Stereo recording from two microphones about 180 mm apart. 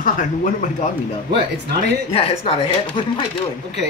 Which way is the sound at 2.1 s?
30° left (ahead or behind).